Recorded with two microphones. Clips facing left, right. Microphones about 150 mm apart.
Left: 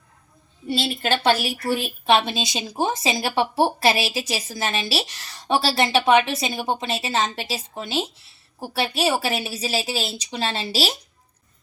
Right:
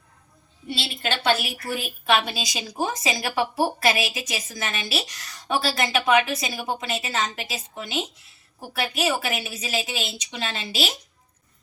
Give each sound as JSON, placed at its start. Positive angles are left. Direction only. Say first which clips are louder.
{"t": 0.7, "sound": "a woman's voice", "louder": "left 5 dB", "side_deg": 40}